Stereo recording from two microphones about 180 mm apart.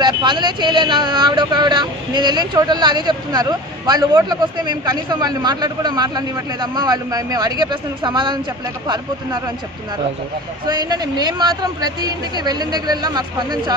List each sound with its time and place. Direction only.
0.0 s speech: 25° right (ahead or behind)
10.7 s speech: 25° right (ahead or behind)